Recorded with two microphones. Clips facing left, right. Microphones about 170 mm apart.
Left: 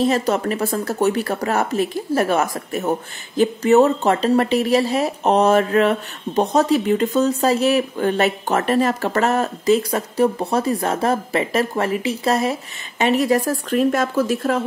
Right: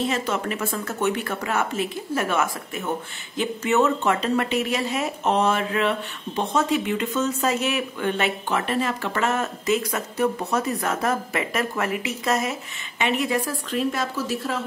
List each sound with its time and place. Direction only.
0.0 s a woman's voice: 40° left (ahead or behind)